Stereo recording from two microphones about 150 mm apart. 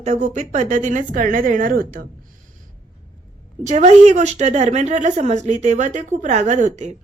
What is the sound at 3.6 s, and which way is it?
A woman's voice, 50° right (ahead or behind).